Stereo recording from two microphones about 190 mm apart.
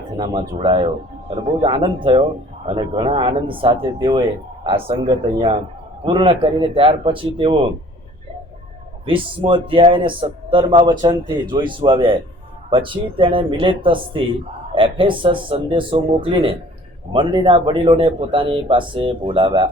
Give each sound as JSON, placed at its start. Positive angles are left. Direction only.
{"t": 0.2, "sound": "speech", "side_deg": -25}
{"t": 9.0, "sound": "speech", "side_deg": -30}